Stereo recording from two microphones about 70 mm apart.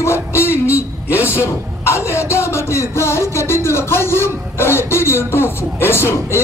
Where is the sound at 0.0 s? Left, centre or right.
Left.